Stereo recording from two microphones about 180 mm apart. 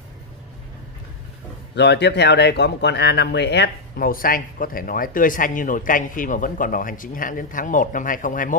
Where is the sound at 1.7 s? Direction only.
70° left (ahead or behind).